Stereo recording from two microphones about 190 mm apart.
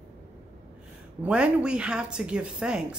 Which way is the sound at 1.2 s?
5° right (ahead or behind).